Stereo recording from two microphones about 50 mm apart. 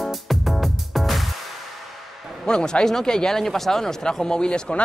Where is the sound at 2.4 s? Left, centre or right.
Centre.